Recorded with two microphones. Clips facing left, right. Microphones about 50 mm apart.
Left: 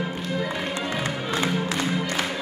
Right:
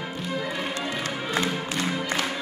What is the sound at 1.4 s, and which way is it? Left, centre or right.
Music, centre.